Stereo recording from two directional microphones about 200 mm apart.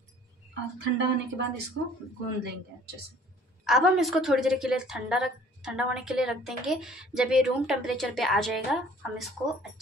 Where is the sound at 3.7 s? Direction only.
Centre (ahead or behind).